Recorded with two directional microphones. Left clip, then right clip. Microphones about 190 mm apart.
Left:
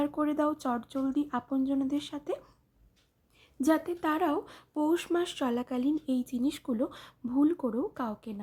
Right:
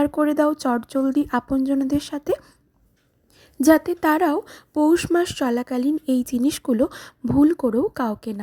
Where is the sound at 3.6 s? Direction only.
35° right (ahead or behind).